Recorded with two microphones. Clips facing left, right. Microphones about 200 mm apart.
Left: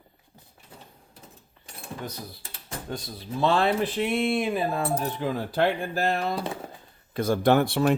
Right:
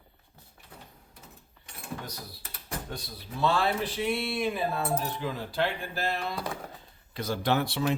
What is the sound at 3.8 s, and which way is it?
Speech, 50° left (ahead or behind).